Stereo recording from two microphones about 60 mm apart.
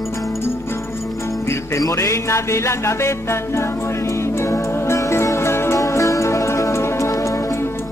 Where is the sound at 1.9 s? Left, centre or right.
Left.